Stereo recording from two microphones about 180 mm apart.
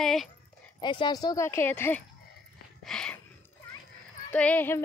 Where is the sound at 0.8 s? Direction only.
25° left (ahead or behind).